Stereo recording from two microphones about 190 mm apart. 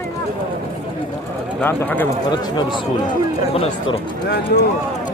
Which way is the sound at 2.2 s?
25° left (ahead or behind).